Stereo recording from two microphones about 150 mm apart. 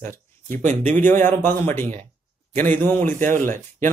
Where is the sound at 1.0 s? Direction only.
15° left (ahead or behind).